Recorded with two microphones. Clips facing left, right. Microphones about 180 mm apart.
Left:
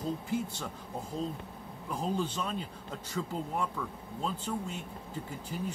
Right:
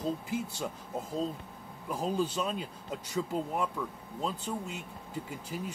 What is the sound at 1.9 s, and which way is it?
Speech, 10° right (ahead or behind).